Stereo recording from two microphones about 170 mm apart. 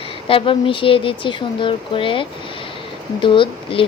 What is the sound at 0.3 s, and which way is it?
Speech, 30° left (ahead or behind).